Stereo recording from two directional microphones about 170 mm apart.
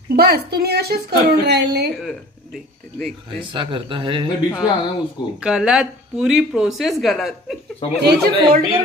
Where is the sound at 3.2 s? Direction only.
30° right (ahead or behind).